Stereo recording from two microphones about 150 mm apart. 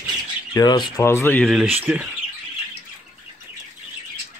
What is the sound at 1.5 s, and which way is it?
Speech, 10° right (ahead or behind).